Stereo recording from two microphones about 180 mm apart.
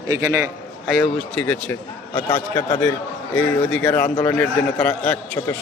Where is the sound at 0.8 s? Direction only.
Centre (ahead or behind).